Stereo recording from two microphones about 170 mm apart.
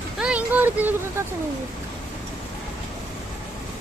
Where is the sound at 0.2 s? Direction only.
5° right (ahead or behind).